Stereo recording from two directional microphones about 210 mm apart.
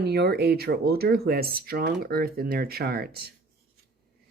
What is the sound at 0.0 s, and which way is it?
Speech, 50° right (ahead or behind).